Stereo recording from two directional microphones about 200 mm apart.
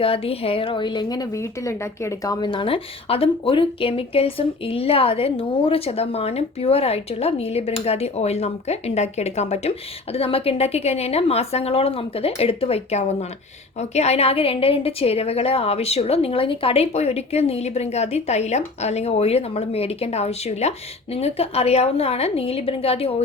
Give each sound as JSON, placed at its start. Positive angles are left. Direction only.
{"t": 0.0, "sound": "a woman's voice", "side_deg": 30}